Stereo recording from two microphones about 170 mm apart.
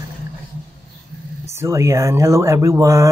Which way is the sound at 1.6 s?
20° right (ahead or behind).